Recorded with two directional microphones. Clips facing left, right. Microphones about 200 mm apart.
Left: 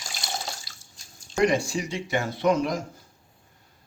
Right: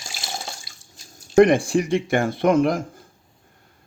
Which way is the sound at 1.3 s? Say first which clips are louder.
Right 8 dB; 55° right (ahead or behind).